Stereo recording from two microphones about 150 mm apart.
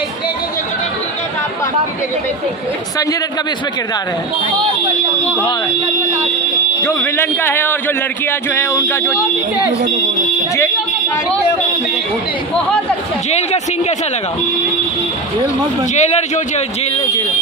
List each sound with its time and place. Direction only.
6.8 s speech: 15° left (ahead or behind)
13.4 s a man's voice: 45° left (ahead or behind)
15.9 s a man's voice: 50° left (ahead or behind)